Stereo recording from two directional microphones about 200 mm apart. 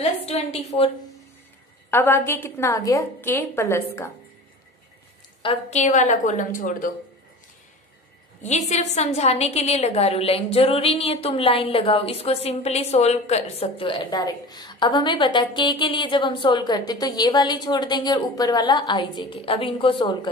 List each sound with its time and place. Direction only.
0.0 s a woman's voice: 30° left (ahead or behind)
1.9 s a woman's voice: 10° left (ahead or behind)
5.4 s a woman's voice: 30° left (ahead or behind)
8.4 s a woman's voice: 35° left (ahead or behind)